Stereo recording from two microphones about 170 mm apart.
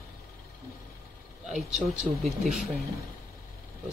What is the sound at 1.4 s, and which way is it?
Speech, 5° right (ahead or behind).